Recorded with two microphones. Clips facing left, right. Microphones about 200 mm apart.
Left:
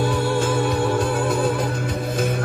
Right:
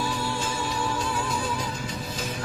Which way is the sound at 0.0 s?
55° left (ahead or behind).